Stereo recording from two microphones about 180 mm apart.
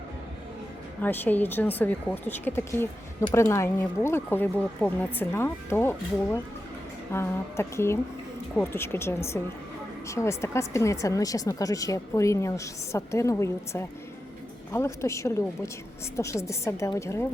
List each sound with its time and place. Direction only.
1.0 s speech: 10° left (ahead or behind)